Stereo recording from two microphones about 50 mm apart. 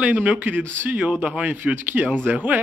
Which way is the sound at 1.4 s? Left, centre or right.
Right.